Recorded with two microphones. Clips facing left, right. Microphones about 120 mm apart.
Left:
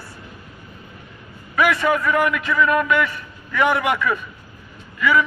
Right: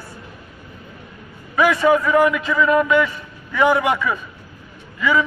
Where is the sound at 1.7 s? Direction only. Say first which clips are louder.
Right 4 dB; 15° right (ahead or behind).